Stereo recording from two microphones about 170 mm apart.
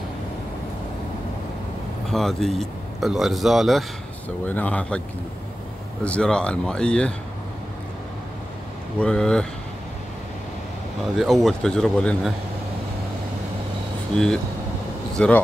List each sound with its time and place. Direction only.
2.0 s speech: centre (ahead or behind)
6.0 s speech: 5° left (ahead or behind)
9.0 s speech: 5° left (ahead or behind)
11.1 s speech: centre (ahead or behind)
14.1 s speech: 5° left (ahead or behind)